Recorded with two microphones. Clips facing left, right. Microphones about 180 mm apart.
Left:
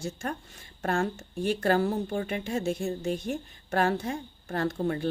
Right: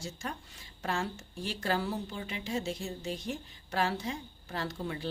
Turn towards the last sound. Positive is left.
turn(degrees=50)  # may be behind; listen again after turning